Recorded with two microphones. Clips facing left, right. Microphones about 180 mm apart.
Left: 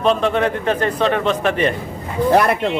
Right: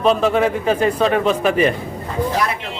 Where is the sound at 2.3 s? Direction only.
60° left (ahead or behind).